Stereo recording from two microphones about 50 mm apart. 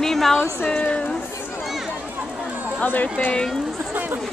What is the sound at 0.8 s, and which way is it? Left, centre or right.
Speech, left.